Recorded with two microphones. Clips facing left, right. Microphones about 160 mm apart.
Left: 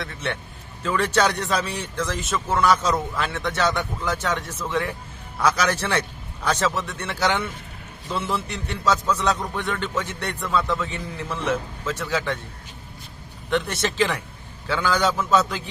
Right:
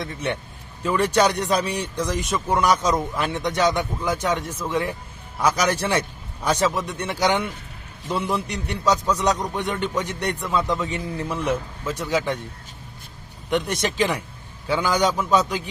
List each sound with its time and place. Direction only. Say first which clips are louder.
0.0 s a man's voice: right 3 dB; 15° right (ahead or behind)
13.5 s a man's voice: right 1 dB; 15° right (ahead or behind)